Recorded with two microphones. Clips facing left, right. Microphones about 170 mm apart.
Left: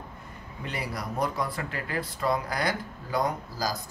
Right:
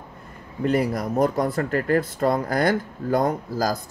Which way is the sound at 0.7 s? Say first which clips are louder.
Right 12 dB; 50° right (ahead or behind).